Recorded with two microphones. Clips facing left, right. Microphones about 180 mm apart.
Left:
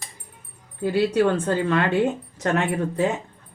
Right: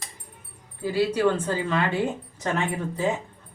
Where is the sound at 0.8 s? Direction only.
60° left (ahead or behind).